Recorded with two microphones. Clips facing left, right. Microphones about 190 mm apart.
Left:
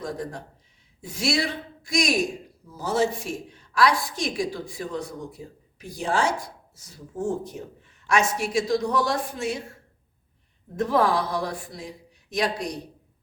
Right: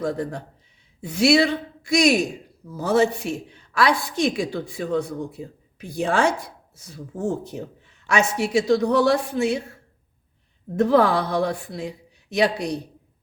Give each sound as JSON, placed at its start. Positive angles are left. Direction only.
{"t": 0.0, "sound": "speech", "side_deg": -65}
{"t": 10.8, "sound": "speech", "side_deg": -65}